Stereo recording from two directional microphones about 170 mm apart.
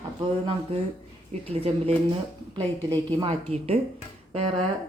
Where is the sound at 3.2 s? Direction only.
35° right (ahead or behind).